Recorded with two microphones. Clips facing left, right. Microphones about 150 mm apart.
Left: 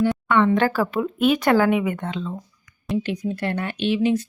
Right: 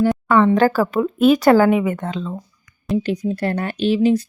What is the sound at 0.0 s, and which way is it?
Speech, 40° right (ahead or behind).